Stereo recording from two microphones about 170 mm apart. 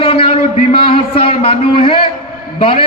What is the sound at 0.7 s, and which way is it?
A man's voice, 30° left (ahead or behind).